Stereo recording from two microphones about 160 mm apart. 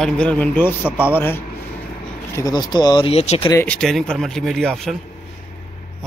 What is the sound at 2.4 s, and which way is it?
Speech, 25° left (ahead or behind).